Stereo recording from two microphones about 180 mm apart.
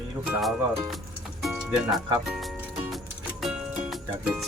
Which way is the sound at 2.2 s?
Centre (ahead or behind).